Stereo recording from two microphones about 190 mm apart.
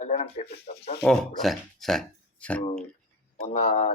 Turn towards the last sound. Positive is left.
turn(degrees=35)  # may be behind; listen again after turning